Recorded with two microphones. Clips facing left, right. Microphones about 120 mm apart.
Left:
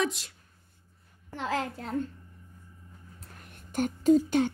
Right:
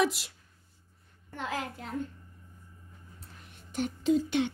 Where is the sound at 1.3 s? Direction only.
30° left (ahead or behind).